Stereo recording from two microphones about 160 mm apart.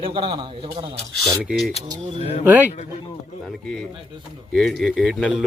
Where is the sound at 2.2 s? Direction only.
40° left (ahead or behind).